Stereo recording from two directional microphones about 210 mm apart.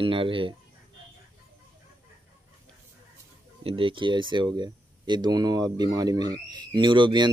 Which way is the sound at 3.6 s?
25° right (ahead or behind).